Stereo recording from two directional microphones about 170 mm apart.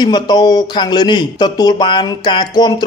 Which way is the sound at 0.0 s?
25° left (ahead or behind).